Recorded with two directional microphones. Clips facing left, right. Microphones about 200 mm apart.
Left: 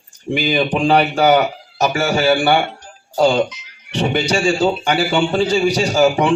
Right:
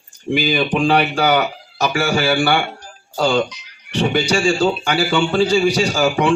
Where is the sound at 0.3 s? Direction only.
20° left (ahead or behind).